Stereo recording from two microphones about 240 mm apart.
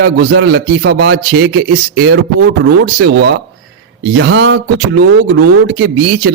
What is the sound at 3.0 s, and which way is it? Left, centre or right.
A man's voice, right.